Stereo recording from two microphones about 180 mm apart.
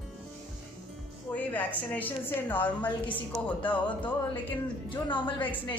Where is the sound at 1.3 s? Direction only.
10° left (ahead or behind).